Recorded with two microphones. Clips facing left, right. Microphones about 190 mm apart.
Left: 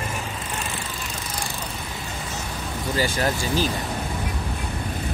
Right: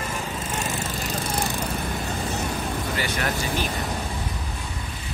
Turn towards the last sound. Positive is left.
turn(degrees=30)  # may be behind; listen again after turning